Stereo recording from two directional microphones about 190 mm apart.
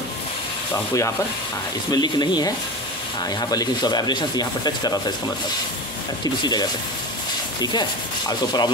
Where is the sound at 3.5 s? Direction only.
20° left (ahead or behind).